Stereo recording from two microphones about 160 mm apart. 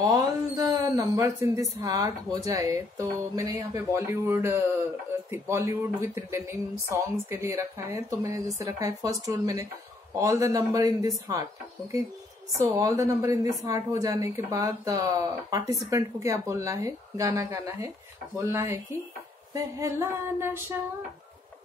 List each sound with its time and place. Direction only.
0.0 s speech: 20° right (ahead or behind)
12.5 s speech: 20° right (ahead or behind)
19.5 s a sound: 20° right (ahead or behind)